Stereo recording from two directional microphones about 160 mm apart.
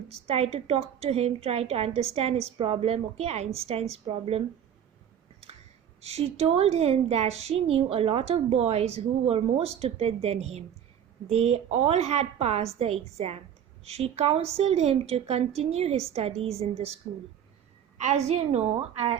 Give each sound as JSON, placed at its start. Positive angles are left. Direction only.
{"t": 0.3, "sound": "a woman's voice", "side_deg": -40}
{"t": 6.0, "sound": "a woman's voice", "side_deg": -40}
{"t": 18.0, "sound": "a woman's voice", "side_deg": -45}